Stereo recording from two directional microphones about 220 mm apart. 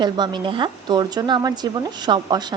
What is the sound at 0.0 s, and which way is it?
A woman's voice, 20° right (ahead or behind).